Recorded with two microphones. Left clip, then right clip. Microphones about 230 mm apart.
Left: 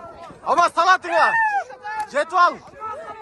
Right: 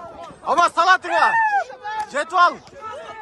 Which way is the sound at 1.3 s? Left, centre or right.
Right.